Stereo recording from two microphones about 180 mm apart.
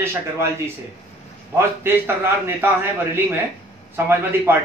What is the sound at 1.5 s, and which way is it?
A man's voice, 15° right (ahead or behind).